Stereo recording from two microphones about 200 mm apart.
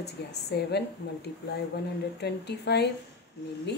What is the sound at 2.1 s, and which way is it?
Speech, 55° left (ahead or behind).